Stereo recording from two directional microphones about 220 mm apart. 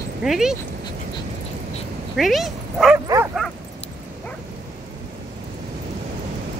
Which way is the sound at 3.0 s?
15° right (ahead or behind).